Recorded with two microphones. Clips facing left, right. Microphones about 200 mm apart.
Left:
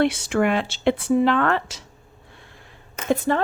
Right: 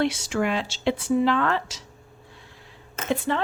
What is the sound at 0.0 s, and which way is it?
Speech, 60° left (ahead or behind).